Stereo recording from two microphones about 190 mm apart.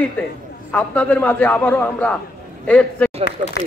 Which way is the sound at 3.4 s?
40° right (ahead or behind).